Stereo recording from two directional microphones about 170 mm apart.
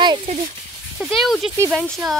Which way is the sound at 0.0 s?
25° right (ahead or behind).